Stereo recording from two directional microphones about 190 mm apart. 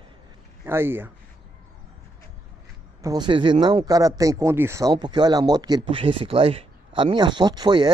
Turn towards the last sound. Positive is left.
turn(degrees=-20)  # may be behind; listen again after turning